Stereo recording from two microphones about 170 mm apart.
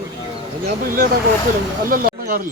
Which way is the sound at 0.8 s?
55° right (ahead or behind).